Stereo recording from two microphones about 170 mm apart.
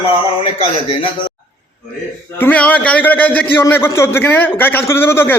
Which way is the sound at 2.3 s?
10° left (ahead or behind).